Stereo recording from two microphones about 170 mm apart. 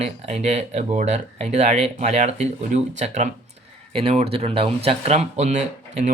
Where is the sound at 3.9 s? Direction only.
35° right (ahead or behind).